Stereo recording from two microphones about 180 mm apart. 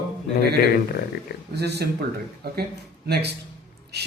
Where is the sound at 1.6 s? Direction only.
65° right (ahead or behind).